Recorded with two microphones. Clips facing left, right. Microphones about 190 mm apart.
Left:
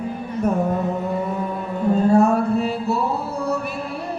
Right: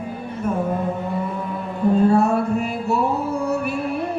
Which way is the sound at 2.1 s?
40° left (ahead or behind).